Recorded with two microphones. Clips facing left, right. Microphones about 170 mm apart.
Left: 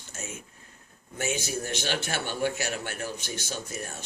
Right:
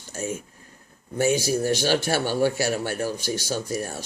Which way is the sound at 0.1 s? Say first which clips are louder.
Right 11 dB; 35° right (ahead or behind).